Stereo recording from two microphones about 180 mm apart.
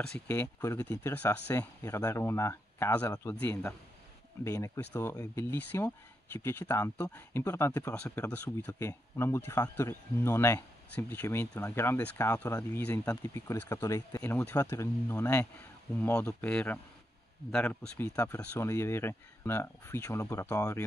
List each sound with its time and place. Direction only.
0.0 s speech: 5° left (ahead or behind)